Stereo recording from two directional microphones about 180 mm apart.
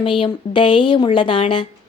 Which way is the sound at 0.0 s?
30° left (ahead or behind).